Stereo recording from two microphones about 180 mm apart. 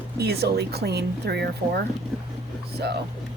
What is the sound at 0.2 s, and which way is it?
A woman's voice, 65° right (ahead or behind).